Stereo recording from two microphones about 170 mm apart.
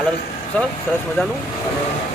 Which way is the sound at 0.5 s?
10° left (ahead or behind).